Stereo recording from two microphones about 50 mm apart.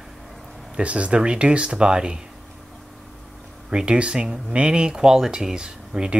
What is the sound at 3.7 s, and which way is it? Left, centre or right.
Speech, centre.